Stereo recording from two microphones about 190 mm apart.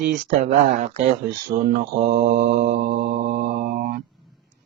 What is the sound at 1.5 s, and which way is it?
Mantra, 45° right (ahead or behind).